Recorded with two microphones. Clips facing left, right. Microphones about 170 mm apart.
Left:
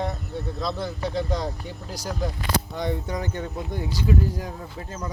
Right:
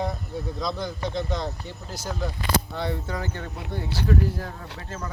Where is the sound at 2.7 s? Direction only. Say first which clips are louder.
Left 2 dB; 20° left (ahead or behind).